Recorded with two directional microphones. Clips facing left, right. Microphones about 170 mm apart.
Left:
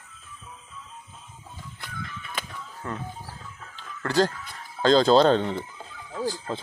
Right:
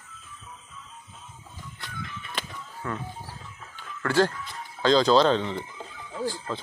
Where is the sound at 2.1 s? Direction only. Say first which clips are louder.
Even; 5° right (ahead or behind).